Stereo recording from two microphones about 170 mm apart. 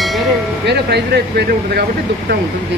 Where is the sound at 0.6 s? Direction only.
75° right (ahead or behind).